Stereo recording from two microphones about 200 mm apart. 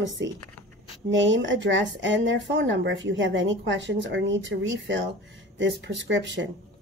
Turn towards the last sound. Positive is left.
turn(degrees=-65)  # may be behind; listen again after turning